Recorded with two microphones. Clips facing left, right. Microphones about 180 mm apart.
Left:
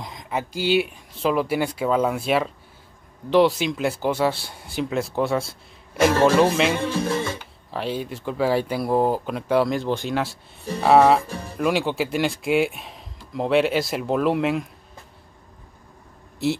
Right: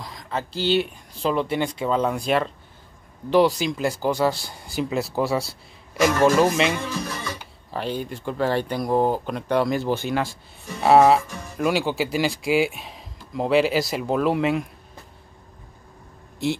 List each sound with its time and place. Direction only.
0.0 s speech: 20° left (ahead or behind); by 5.6 s centre (ahead or behind)
6.0 s speech: 30° left (ahead or behind)
6.8 s music: 30° left (ahead or behind)
7.7 s speech: centre (ahead or behind)
11.2 s speech: 30° left (ahead or behind)
11.5 s speech: centre (ahead or behind)
16.4 s speech: 5° left (ahead or behind)